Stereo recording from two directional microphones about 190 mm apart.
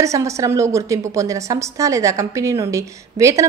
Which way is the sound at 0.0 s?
15° right (ahead or behind).